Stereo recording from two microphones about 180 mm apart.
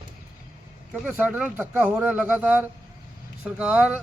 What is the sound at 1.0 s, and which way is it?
Speech, 10° right (ahead or behind).